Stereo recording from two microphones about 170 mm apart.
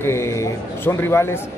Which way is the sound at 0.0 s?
15° left (ahead or behind).